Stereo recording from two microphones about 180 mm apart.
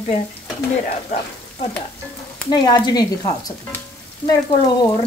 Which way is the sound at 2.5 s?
25° left (ahead or behind).